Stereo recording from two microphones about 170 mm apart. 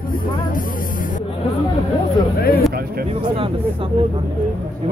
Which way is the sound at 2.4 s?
65° left (ahead or behind).